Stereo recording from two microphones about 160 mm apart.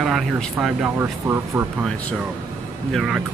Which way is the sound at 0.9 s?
15° right (ahead or behind).